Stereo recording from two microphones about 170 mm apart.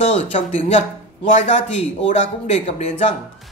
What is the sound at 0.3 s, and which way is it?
Speech, 35° left (ahead or behind).